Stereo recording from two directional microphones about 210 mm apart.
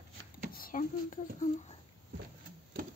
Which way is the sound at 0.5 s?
40° left (ahead or behind).